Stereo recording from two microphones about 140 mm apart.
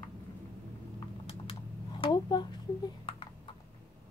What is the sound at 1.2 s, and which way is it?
Typing, 40° left (ahead or behind).